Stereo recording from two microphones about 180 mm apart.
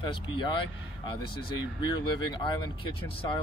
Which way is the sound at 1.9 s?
25° left (ahead or behind).